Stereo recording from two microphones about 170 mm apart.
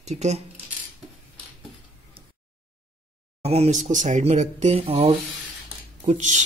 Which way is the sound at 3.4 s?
40° right (ahead or behind).